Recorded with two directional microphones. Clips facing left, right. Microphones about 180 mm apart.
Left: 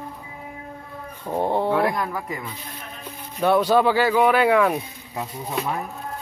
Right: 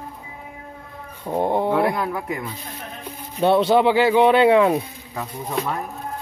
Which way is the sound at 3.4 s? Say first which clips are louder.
Right 2 dB; 25° right (ahead or behind).